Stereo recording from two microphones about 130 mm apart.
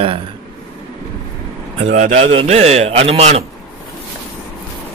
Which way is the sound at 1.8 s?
65° right (ahead or behind).